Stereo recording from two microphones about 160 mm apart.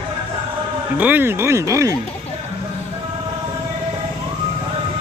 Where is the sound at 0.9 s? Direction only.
10° right (ahead or behind).